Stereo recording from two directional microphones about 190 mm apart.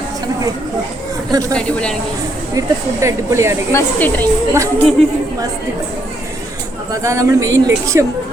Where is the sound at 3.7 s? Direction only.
15° left (ahead or behind).